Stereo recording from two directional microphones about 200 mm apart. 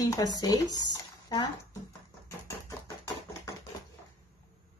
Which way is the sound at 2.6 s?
15° left (ahead or behind).